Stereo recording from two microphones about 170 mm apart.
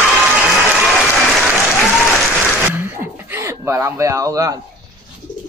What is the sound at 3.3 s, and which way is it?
Speech, 15° right (ahead or behind).